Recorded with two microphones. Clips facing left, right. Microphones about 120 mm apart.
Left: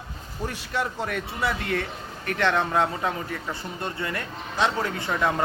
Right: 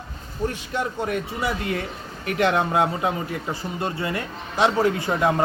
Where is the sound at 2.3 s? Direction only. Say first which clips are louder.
Right 3 dB; 15° right (ahead or behind).